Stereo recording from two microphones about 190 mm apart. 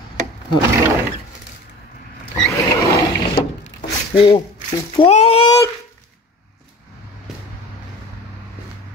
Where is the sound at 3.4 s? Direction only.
25° left (ahead or behind).